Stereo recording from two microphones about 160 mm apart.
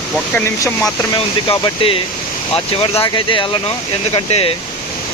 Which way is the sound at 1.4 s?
35° left (ahead or behind).